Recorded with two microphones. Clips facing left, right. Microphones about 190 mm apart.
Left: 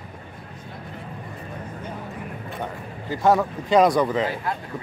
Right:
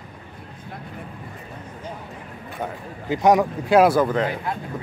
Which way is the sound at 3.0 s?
15° right (ahead or behind).